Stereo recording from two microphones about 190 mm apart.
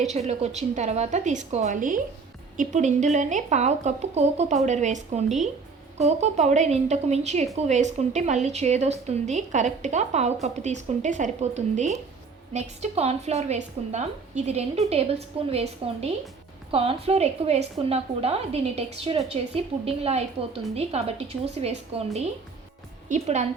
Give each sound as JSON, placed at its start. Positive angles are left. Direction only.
{"t": 0.0, "sound": "a woman's voice", "side_deg": -35}